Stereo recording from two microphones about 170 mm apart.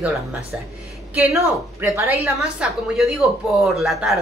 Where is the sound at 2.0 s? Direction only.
15° right (ahead or behind).